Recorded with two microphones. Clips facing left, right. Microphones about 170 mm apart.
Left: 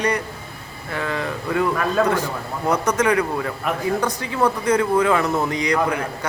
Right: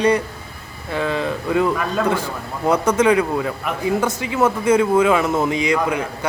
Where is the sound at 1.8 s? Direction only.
5° right (ahead or behind).